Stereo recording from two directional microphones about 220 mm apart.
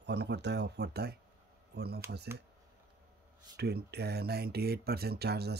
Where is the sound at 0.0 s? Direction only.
50° right (ahead or behind).